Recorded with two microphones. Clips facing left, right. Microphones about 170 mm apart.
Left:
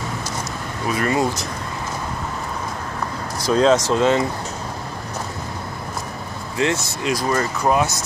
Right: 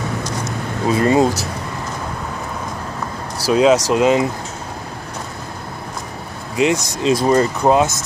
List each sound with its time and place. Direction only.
0.8 s speech: 25° right (ahead or behind)
3.4 s speech: 10° right (ahead or behind)
6.5 s speech: 15° right (ahead or behind)